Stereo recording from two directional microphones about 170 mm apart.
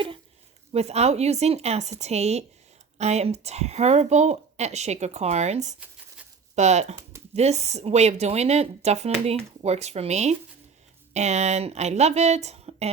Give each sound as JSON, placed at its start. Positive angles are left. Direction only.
{"t": 0.7, "sound": "speech", "side_deg": -40}